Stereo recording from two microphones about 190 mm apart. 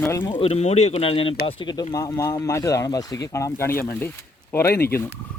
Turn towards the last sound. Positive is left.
turn(degrees=10)  # may be behind; listen again after turning